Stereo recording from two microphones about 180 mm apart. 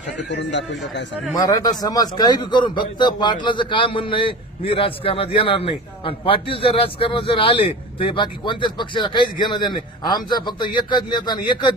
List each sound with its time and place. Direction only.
0.3 s speech: 80° left
1.4 s a man's voice: 20° left (ahead or behind)